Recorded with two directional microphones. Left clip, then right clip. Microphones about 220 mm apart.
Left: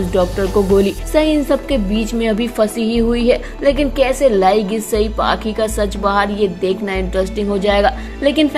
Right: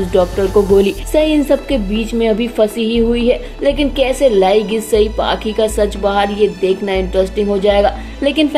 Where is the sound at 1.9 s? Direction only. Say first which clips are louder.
Right 1 dB; 70° left (ahead or behind).